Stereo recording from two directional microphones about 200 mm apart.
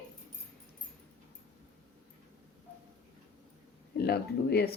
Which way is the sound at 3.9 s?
55° left (ahead or behind).